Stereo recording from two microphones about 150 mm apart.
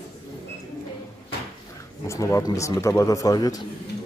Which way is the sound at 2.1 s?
20° left (ahead or behind).